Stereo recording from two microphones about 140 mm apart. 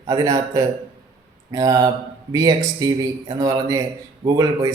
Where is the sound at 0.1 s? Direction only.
25° right (ahead or behind).